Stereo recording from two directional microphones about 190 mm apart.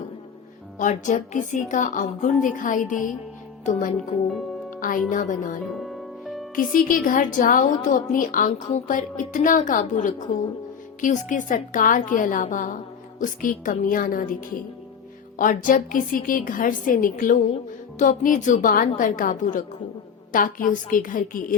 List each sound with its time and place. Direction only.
0.8 s a woman's voice: 40° left (ahead or behind)
5.8 s music: centre (ahead or behind)
6.6 s a woman's voice: 45° left (ahead or behind)
15.4 s a woman's voice: 45° left (ahead or behind)